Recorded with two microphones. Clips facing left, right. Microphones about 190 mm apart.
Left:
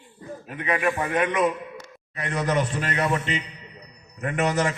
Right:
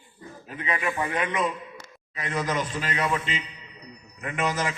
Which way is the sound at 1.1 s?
55° left (ahead or behind).